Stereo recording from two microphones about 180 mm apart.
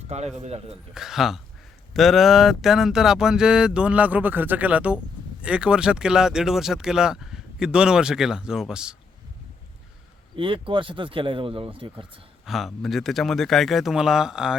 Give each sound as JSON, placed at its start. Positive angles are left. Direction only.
{"t": 0.1, "sound": "a man's voice", "side_deg": -40}
{"t": 0.9, "sound": "speech", "side_deg": 0}
{"t": 10.3, "sound": "speech", "side_deg": -30}
{"t": 12.5, "sound": "speech", "side_deg": 0}